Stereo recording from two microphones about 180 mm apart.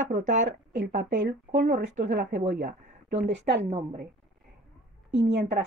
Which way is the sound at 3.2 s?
75° right (ahead or behind).